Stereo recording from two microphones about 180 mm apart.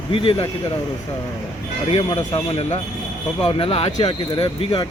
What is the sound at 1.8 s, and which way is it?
Speech, 35° left (ahead or behind).